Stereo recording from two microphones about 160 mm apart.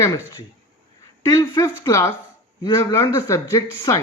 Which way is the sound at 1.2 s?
20° left (ahead or behind).